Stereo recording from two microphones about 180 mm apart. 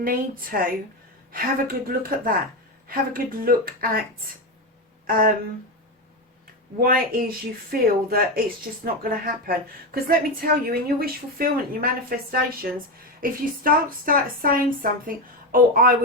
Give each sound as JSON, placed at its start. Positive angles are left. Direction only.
{"t": 0.0, "sound": "a woman's voice", "side_deg": -50}
{"t": 5.0, "sound": "speech", "side_deg": -50}
{"t": 6.8, "sound": "a woman's voice", "side_deg": -55}